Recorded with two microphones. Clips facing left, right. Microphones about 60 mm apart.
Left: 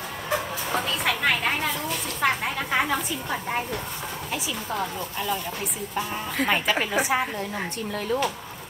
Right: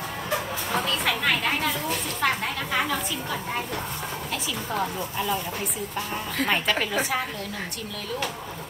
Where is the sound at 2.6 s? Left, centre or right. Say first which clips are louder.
Left 2 dB; left.